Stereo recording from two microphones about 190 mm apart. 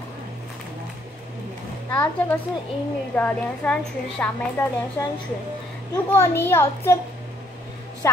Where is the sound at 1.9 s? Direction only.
10° left (ahead or behind).